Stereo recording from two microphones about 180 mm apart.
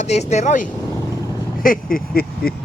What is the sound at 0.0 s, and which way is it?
Speech, 40° left (ahead or behind).